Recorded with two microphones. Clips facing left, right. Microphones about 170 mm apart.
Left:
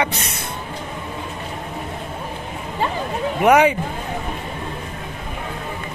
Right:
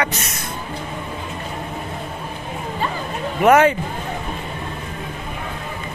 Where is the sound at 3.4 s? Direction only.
15° left (ahead or behind).